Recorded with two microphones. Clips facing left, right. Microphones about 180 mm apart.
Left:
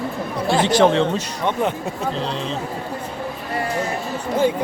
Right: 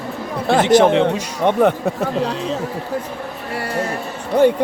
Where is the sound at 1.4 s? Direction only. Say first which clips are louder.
Right 8 dB; 55° right (ahead or behind).